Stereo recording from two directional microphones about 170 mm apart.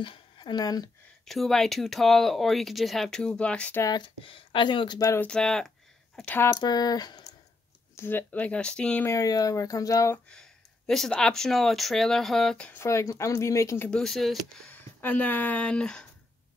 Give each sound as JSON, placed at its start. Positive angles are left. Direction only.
{"t": 0.0, "sound": "speech", "side_deg": 30}
{"t": 1.2, "sound": "speech", "side_deg": 0}
{"t": 3.8, "sound": "speech", "side_deg": 25}
{"t": 5.3, "sound": "speech", "side_deg": 5}
{"t": 7.9, "sound": "speech", "side_deg": 10}
{"t": 9.1, "sound": "speech", "side_deg": 20}
{"t": 10.3, "sound": "speech", "side_deg": 5}
{"t": 13.8, "sound": "speech", "side_deg": 5}